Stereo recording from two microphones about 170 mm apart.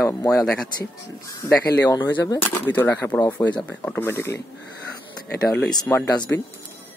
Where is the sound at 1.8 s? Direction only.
20° left (ahead or behind).